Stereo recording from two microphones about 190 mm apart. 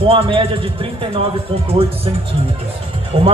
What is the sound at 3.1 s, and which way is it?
Speech, 30° right (ahead or behind).